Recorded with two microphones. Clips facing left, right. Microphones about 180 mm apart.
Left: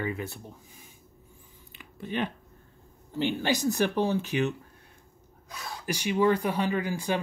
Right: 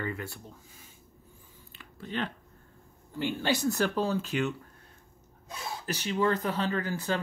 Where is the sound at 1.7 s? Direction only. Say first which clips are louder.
Left 3 dB; 15° left (ahead or behind).